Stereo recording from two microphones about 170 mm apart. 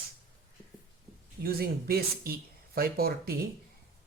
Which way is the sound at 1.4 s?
65° right (ahead or behind).